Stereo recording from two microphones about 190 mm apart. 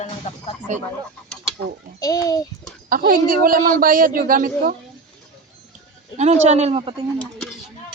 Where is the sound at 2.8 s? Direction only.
50° right (ahead or behind).